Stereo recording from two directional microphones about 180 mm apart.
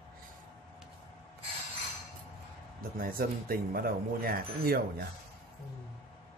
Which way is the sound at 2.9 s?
55° right (ahead or behind).